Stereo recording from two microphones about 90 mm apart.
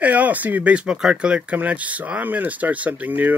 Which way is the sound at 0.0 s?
15° right (ahead or behind).